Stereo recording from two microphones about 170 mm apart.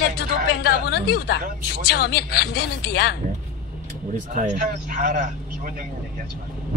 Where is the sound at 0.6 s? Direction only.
70° left (ahead or behind).